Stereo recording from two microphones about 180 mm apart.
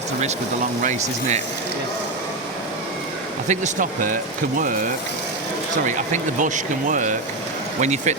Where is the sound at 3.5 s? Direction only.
45° right (ahead or behind).